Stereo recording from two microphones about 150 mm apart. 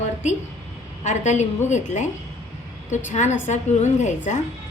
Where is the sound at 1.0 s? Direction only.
50° left (ahead or behind).